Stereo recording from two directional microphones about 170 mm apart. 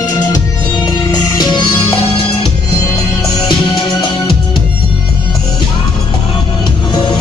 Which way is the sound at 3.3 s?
25° left (ahead or behind).